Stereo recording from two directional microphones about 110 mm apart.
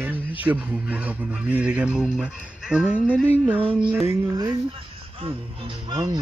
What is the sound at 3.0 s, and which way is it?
Music, 15° left (ahead or behind).